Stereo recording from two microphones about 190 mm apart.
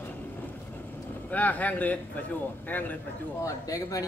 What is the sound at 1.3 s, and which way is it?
A man's voice, 10° left (ahead or behind).